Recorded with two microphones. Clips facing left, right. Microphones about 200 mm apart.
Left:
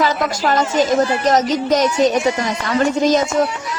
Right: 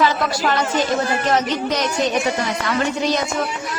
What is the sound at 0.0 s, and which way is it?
Speech, 45° left (ahead or behind).